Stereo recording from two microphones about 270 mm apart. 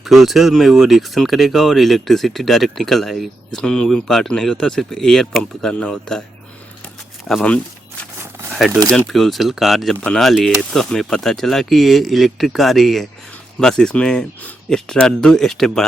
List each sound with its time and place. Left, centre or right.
0.0 s speech: centre
7.3 s speech: centre
8.2 s a sound: centre
8.9 s speech: centre